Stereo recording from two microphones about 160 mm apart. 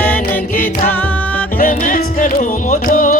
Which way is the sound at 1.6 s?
55° left (ahead or behind).